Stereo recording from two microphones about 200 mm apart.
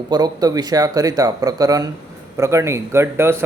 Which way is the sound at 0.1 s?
20° right (ahead or behind).